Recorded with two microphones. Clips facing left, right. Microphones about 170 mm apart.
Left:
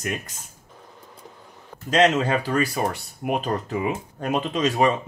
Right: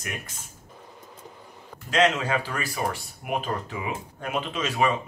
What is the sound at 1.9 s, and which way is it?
Speech, 40° left (ahead or behind).